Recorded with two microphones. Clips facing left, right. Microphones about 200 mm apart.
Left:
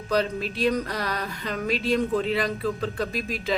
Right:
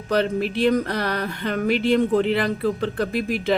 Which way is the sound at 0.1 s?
60° right (ahead or behind).